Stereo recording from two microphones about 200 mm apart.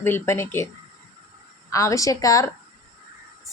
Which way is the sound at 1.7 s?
15° left (ahead or behind).